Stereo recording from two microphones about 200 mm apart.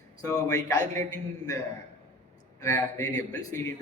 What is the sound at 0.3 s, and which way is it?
Speech, 15° left (ahead or behind).